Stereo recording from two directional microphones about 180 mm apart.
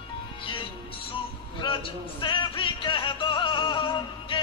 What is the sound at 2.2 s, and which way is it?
Music, 30° left (ahead or behind).